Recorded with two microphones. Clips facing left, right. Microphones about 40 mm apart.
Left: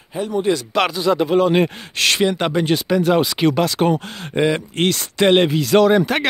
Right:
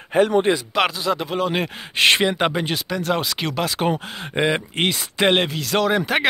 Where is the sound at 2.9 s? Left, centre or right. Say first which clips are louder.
Left 7 dB; centre.